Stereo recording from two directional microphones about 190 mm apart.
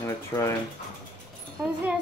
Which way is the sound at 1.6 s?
10° right (ahead or behind).